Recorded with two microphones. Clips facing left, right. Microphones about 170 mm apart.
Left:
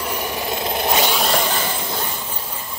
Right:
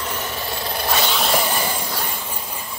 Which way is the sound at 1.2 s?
5° right (ahead or behind).